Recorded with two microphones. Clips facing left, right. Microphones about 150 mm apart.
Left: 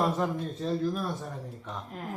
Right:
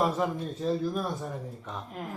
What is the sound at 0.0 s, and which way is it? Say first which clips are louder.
Speech: right 1 dB; 5° right (ahead or behind).